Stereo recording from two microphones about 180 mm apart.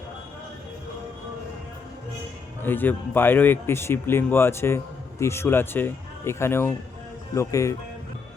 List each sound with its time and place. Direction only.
2.6 s speech: 10° left (ahead or behind)